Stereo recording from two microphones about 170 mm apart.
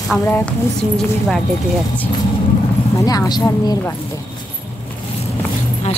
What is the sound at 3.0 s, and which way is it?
Speech, 20° left (ahead or behind).